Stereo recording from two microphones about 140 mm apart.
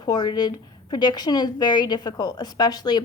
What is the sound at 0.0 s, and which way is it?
A woman's voice, 30° left (ahead or behind).